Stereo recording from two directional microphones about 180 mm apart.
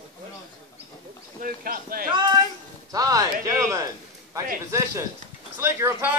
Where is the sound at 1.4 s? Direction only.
50° right (ahead or behind).